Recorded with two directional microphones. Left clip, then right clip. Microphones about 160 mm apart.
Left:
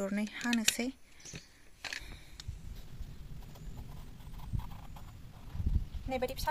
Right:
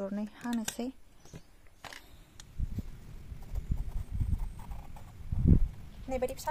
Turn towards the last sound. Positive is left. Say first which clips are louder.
# right 1 dB
turn(degrees=0)  # may be behind; listen again after turning